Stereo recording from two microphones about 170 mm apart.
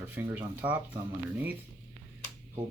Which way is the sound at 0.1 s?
10° right (ahead or behind).